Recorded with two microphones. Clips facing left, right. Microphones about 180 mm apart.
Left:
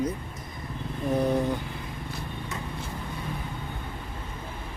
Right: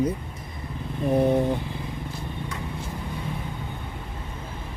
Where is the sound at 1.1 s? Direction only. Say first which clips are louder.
Right 4 dB; 25° right (ahead or behind).